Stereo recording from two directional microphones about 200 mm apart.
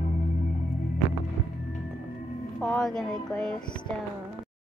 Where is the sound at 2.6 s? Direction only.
5° left (ahead or behind).